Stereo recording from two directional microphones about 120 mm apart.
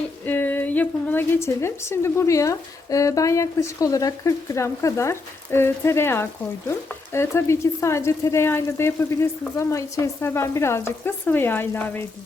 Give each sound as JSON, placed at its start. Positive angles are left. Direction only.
{"t": 0.3, "sound": "a woman's voice", "side_deg": 15}